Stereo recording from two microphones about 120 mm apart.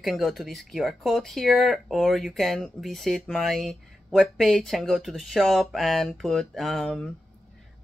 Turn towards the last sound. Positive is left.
turn(degrees=0)  # may be behind; listen again after turning